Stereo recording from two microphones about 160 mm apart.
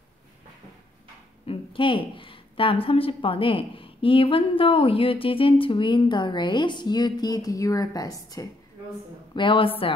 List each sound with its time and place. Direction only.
1.5 s a woman's voice: 35° left (ahead or behind)